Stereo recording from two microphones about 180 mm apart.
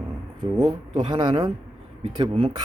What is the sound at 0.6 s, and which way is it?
Speech, 25° right (ahead or behind).